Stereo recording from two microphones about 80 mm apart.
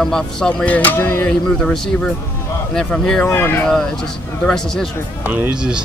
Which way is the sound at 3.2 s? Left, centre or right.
Left.